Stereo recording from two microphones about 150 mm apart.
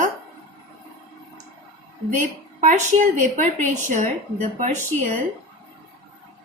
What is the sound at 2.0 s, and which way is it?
A woman's voice, 55° right (ahead or behind).